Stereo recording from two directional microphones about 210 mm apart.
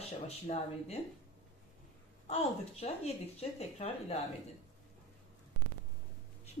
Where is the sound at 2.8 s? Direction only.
30° left (ahead or behind).